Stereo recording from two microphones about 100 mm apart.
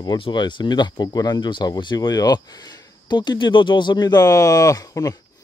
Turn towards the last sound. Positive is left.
turn(degrees=35)  # may be behind; listen again after turning